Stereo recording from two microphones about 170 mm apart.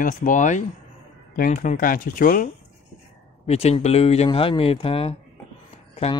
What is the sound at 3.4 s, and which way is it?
Speech, 40° left (ahead or behind).